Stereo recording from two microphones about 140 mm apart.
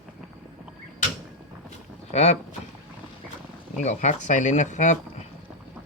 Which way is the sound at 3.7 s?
55° left (ahead or behind).